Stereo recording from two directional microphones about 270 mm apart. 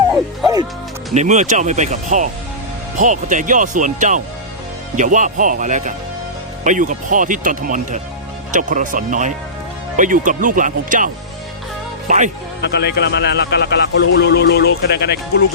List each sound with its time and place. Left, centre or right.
1.1 s speech: right
12.6 s a man's voice: left